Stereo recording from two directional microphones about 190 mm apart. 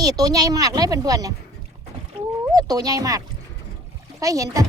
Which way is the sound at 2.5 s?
20° right (ahead or behind).